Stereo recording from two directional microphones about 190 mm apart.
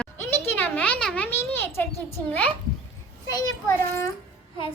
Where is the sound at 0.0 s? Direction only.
10° left (ahead or behind).